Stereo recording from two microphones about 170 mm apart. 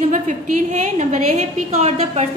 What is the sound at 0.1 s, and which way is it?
A woman's voice, 45° right (ahead or behind).